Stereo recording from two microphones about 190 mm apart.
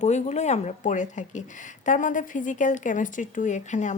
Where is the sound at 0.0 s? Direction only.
35° left (ahead or behind).